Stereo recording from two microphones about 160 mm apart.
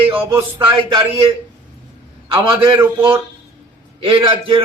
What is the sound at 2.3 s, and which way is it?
Speech, 30° right (ahead or behind).